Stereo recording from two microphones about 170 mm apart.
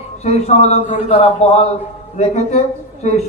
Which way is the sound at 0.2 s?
40° left (ahead or behind).